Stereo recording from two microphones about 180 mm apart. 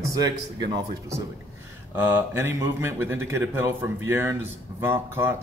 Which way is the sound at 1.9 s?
10° right (ahead or behind).